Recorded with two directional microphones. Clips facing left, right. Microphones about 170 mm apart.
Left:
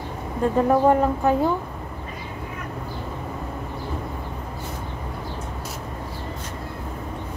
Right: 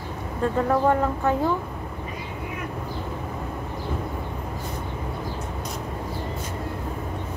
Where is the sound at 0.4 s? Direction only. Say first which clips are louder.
Left 3 dB; 20° left (ahead or behind).